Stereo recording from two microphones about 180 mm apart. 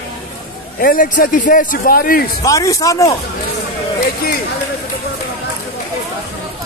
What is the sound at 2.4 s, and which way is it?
Speech, 20° left (ahead or behind).